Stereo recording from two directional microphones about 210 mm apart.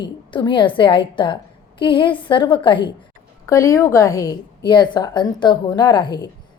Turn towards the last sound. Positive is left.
turn(degrees=20)  # may be behind; listen again after turning